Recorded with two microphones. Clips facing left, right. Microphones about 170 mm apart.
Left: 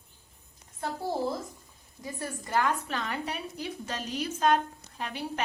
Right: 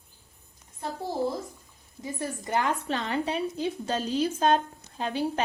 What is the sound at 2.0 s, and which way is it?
A woman's voice, 20° right (ahead or behind).